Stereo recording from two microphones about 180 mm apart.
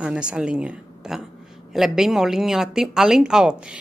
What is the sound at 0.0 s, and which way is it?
A woman's voice, 5° right (ahead or behind).